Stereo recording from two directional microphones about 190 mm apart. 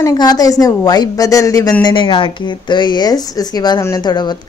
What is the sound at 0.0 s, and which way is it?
A woman's voice, 20° left (ahead or behind).